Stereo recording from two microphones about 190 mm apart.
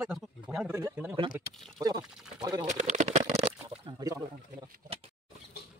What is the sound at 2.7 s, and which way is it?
Speech, 40° right (ahead or behind).